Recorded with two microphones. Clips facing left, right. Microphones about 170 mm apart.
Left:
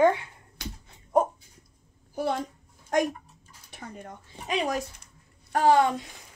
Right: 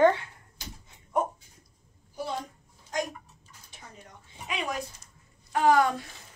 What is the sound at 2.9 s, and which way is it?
A child's voice, 60° left (ahead or behind).